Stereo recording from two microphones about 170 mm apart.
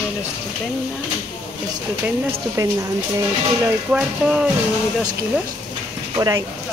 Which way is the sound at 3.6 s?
5° right (ahead or behind).